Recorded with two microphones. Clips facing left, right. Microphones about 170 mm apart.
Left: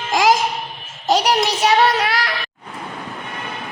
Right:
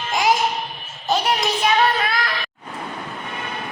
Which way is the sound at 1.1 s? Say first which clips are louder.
Left 4 dB; 80° left.